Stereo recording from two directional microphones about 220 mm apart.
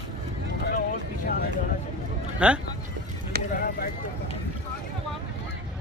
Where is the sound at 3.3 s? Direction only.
45° right (ahead or behind).